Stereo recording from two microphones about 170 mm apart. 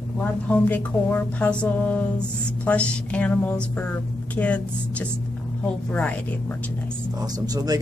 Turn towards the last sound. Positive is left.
turn(degrees=-20)  # may be behind; listen again after turning